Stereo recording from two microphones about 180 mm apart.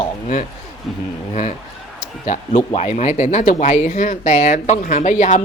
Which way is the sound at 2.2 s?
40° left (ahead or behind).